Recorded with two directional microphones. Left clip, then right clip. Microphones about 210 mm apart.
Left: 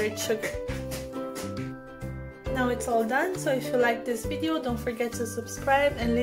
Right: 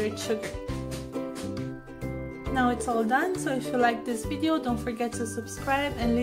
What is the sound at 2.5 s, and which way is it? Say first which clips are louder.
A woman's voice: even; 10° right (ahead or behind).